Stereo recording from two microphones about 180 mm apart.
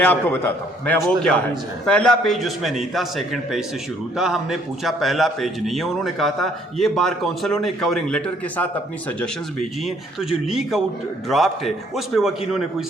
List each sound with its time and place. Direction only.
0.0 s a man's voice: 10° left (ahead or behind)
10.4 s a man's voice: centre (ahead or behind)